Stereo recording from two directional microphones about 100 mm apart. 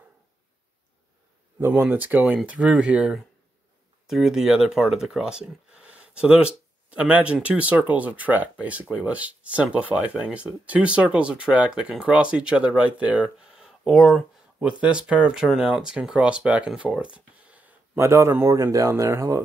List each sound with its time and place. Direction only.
1.6 s speech: 20° right (ahead or behind); by 14.4 s centre (ahead or behind)
14.6 s speech: 10° right (ahead or behind)
17.5 s a sound: 15° right (ahead or behind)
17.9 s speech: 25° right (ahead or behind)